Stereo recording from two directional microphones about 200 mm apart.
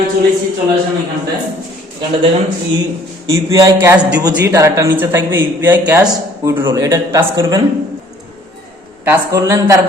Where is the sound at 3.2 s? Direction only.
15° right (ahead or behind).